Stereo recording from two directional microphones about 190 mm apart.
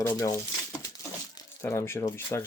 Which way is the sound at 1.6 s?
15° left (ahead or behind).